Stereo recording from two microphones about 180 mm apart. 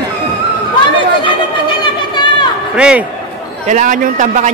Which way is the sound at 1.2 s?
25° left (ahead or behind).